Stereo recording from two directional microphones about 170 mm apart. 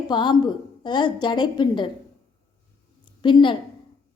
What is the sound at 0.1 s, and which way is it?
A woman's voice, 25° left (ahead or behind).